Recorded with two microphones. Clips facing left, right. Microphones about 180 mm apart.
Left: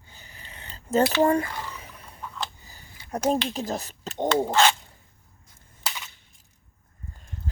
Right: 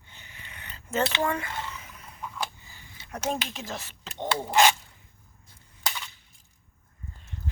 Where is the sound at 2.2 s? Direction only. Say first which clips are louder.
Even; 10° right (ahead or behind).